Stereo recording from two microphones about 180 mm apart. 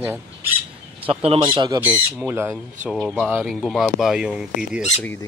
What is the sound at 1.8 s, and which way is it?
Speech, 10° right (ahead or behind).